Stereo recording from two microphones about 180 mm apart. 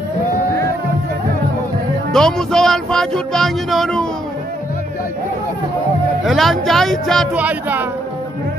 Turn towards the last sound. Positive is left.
turn(degrees=-10)  # may be behind; listen again after turning